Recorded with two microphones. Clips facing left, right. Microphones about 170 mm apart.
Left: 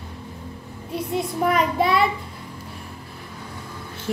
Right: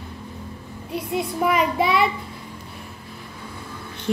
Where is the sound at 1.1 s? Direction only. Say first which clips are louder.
Even; 5° right (ahead or behind).